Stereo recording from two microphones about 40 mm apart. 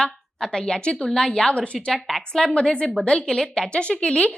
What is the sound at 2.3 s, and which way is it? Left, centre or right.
A woman's voice, centre.